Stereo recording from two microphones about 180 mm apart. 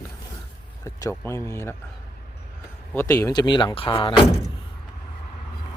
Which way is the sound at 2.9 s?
15° left (ahead or behind).